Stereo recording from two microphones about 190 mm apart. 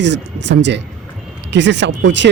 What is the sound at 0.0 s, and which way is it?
Speech, 65° right (ahead or behind).